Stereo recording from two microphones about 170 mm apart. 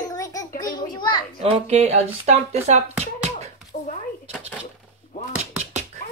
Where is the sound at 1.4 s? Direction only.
40° right (ahead or behind).